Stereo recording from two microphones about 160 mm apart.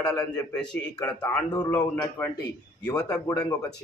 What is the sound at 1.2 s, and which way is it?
Speech, 25° left (ahead or behind).